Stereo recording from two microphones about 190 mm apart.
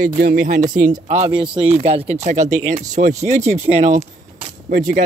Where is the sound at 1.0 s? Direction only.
35° right (ahead or behind).